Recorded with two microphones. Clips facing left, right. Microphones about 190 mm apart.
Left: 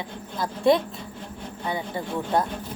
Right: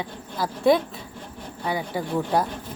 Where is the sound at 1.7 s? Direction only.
10° right (ahead or behind).